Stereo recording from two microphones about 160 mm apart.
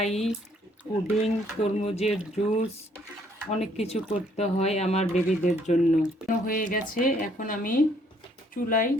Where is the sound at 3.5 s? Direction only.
40° left (ahead or behind).